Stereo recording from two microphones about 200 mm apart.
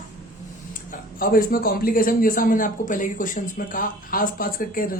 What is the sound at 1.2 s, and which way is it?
A man's voice, 45° left (ahead or behind).